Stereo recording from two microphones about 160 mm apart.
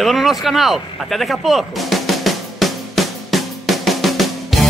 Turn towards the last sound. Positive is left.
turn(degrees=0)  # may be behind; listen again after turning